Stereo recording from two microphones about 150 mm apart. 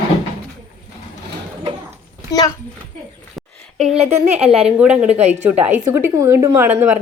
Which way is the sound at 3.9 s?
40° right (ahead or behind).